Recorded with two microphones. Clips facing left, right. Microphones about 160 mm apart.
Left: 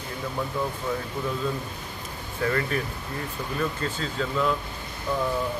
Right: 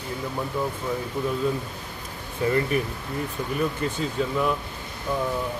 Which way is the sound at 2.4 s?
20° right (ahead or behind).